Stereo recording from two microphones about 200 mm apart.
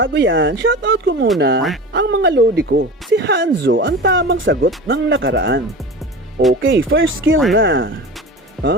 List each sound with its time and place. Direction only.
0.0 s speech: 60° right (ahead or behind)
8.6 s speech: centre (ahead or behind)